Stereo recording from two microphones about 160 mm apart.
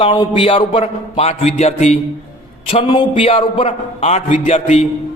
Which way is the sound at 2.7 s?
35° left (ahead or behind).